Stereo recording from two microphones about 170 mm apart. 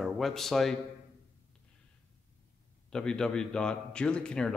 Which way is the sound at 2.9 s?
5° left (ahead or behind).